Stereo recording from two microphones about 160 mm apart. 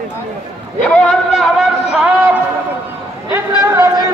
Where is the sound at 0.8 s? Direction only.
5° left (ahead or behind).